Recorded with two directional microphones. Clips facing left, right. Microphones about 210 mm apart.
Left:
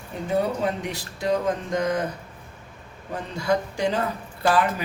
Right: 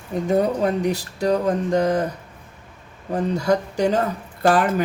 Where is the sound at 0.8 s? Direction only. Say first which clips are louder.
Right 7 dB; 35° right (ahead or behind).